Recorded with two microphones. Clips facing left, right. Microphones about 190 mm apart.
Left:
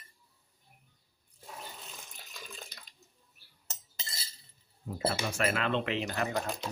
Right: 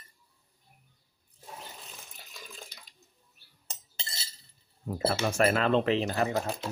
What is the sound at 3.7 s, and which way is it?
Cutlery, 25° right (ahead or behind).